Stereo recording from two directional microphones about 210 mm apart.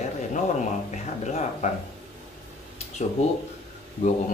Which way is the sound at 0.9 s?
35° left (ahead or behind).